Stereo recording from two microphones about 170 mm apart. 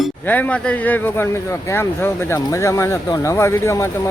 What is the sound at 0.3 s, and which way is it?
Speech, 10° left (ahead or behind).